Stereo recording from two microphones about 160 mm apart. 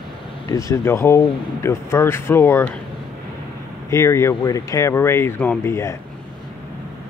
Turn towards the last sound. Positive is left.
turn(degrees=15)  # may be behind; listen again after turning